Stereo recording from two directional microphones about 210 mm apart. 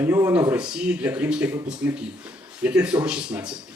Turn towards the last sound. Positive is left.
turn(degrees=-5)  # may be behind; listen again after turning